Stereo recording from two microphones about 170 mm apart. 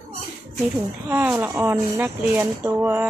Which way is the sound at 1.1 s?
10° right (ahead or behind).